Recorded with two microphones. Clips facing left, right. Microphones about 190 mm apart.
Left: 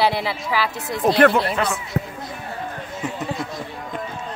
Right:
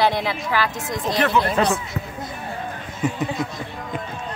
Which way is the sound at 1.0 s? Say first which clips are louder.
Left 5 dB; 60° left (ahead or behind).